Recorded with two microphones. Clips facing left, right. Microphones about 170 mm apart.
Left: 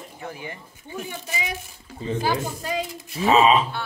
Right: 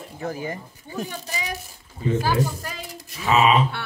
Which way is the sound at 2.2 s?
15° left (ahead or behind).